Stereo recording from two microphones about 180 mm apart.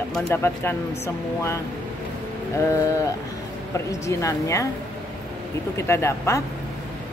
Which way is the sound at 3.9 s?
15° left (ahead or behind).